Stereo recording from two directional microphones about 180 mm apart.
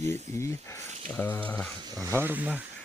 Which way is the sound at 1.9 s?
15° right (ahead or behind).